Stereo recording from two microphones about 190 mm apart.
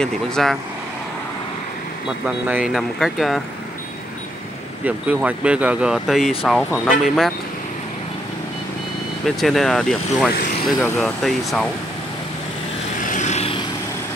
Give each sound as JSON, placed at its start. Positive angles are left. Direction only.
{"t": 0.0, "sound": "speech", "side_deg": 5}
{"t": 2.2, "sound": "speech", "side_deg": -5}
{"t": 4.8, "sound": "speech", "side_deg": -10}
{"t": 9.2, "sound": "speech", "side_deg": 0}
{"t": 13.0, "sound": "vehicle", "side_deg": 40}